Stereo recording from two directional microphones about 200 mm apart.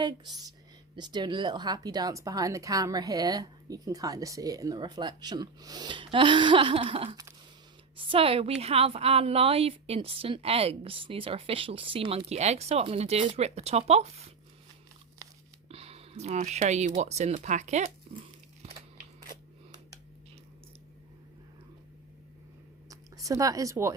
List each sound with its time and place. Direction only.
0.0 s speech: 20° right (ahead or behind)
15.7 s speech: 30° right (ahead or behind)
22.9 s a sound: 15° right (ahead or behind)